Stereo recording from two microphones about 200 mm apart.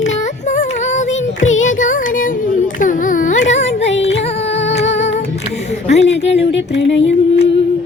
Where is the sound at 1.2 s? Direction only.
75° left (ahead or behind).